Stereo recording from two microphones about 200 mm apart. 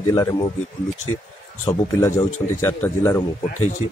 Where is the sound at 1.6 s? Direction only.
15° left (ahead or behind).